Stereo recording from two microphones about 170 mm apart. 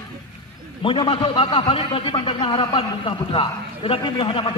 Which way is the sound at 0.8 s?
30° left (ahead or behind).